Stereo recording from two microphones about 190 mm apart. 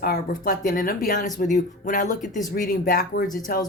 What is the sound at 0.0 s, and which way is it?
Speech, 50° left (ahead or behind).